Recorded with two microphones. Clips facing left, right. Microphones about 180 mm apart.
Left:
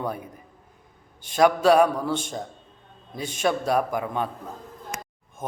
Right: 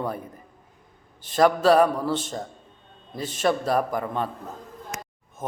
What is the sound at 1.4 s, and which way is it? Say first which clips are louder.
Speech: even; centre (ahead or behind).